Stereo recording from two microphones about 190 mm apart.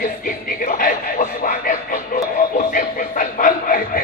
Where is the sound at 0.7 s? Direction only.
45° left (ahead or behind).